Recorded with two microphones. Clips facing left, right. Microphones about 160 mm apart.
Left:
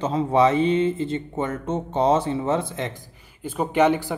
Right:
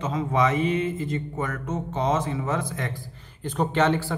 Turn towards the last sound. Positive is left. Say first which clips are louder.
# left 3 dB
turn(degrees=15)  # may be behind; listen again after turning